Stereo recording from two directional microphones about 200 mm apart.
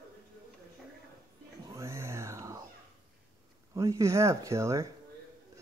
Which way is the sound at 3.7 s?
15° right (ahead or behind).